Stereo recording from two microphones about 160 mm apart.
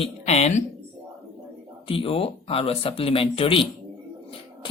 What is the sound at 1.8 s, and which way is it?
Speech, 35° left (ahead or behind).